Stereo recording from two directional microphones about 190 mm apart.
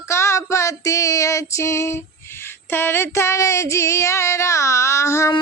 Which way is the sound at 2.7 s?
10° left (ahead or behind).